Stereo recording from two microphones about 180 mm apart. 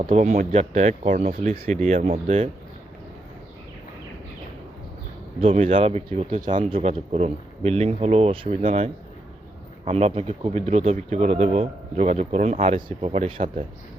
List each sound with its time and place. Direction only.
0.0 s speech: 40° right (ahead or behind)
5.4 s speech: 35° right (ahead or behind)